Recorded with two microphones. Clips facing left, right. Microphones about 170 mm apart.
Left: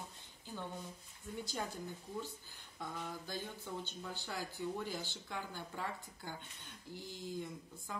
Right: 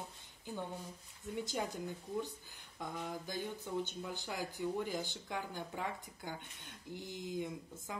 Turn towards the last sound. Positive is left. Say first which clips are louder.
# right 4 dB
turn(degrees=-20)  # may be behind; listen again after turning